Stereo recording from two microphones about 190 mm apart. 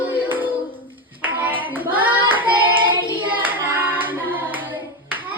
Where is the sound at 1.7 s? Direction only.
10° right (ahead or behind).